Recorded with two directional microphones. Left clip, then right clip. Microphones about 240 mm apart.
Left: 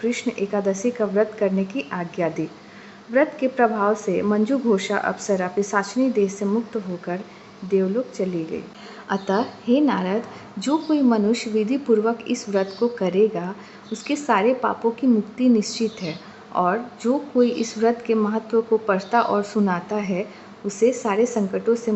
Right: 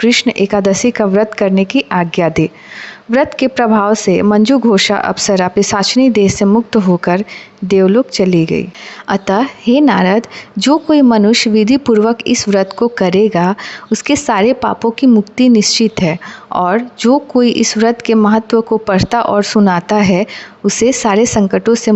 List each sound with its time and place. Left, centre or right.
0.0 s a woman's voice: right